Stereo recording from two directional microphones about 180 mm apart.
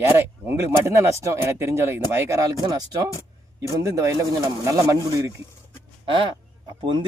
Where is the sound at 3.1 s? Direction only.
20° left (ahead or behind).